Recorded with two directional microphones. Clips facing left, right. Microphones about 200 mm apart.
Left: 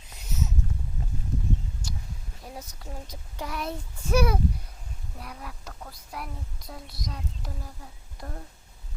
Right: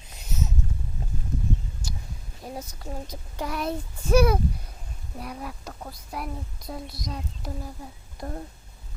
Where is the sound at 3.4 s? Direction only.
40° right (ahead or behind).